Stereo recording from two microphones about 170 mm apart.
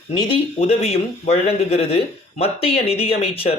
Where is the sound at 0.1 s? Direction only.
30° left (ahead or behind).